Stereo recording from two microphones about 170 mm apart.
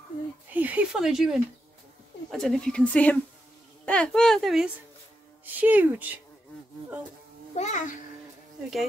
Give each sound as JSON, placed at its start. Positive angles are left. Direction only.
{"t": 0.5, "sound": "a woman's voice", "side_deg": -10}
{"t": 7.5, "sound": "a child's voice", "side_deg": 45}